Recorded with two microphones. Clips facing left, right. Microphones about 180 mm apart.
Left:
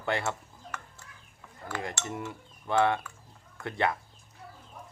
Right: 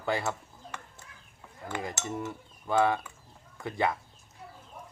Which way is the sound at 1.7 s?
15° right (ahead or behind).